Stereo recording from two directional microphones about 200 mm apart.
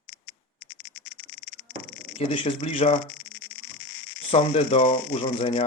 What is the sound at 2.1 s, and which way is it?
Speech, 30° left (ahead or behind).